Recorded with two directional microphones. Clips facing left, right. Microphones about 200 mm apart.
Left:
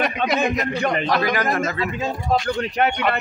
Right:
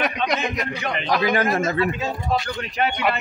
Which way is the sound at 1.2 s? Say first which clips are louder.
Right 1 dB; 25° right (ahead or behind).